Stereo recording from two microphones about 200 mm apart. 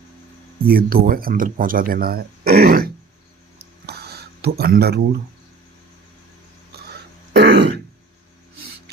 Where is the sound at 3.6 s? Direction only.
55° right (ahead or behind).